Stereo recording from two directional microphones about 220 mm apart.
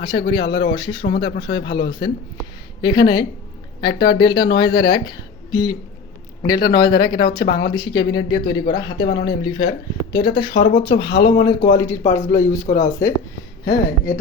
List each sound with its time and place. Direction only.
0.0 s speech: 20° left (ahead or behind)
7.4 s speech: 45° left (ahead or behind)
7.7 s speech: 20° left (ahead or behind)